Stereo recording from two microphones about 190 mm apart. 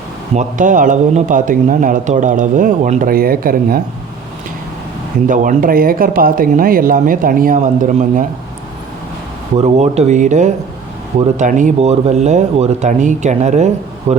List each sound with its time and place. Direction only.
0.3 s a man's voice: 45° right (ahead or behind)
5.3 s a man's voice: 45° right (ahead or behind)
9.6 s speech: 35° right (ahead or behind)